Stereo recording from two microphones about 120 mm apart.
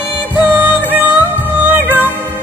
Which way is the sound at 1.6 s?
15° right (ahead or behind).